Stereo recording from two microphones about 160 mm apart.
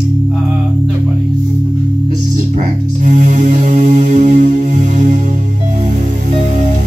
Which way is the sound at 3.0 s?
50° right (ahead or behind).